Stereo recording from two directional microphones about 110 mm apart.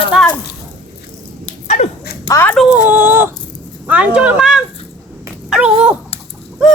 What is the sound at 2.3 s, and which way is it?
Speech, 25° left (ahead or behind).